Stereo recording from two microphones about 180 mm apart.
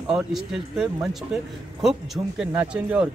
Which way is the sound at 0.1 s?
5° right (ahead or behind).